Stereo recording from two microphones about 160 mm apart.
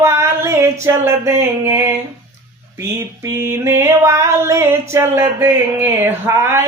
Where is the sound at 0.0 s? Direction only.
15° right (ahead or behind).